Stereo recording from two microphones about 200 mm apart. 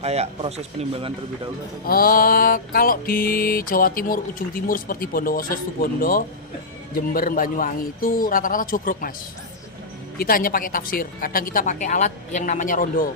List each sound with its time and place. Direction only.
0.0 s speech: 30° right (ahead or behind)
1.8 s music: 45° left (ahead or behind)
10.2 s music: 45° left (ahead or behind)